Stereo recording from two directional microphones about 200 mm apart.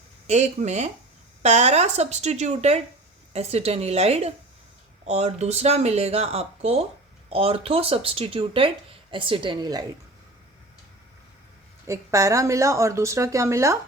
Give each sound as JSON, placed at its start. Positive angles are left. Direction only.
{"t": 0.3, "sound": "speech", "side_deg": -35}
{"t": 11.9, "sound": "speech", "side_deg": -15}